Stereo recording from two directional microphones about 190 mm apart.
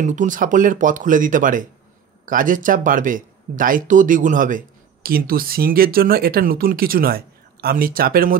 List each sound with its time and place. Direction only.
0.0 s speech: 40° right (ahead or behind)